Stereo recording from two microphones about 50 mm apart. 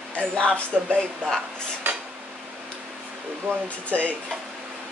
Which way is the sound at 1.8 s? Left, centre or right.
Right.